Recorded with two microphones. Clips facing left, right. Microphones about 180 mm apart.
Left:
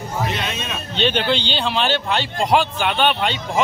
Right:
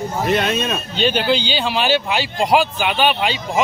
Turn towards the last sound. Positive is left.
turn(degrees=-5)  # may be behind; listen again after turning